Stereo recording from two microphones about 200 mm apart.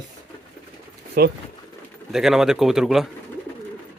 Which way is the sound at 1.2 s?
50° right (ahead or behind).